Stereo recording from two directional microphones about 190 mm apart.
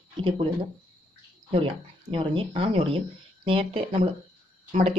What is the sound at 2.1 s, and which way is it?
A woman's voice, 25° right (ahead or behind).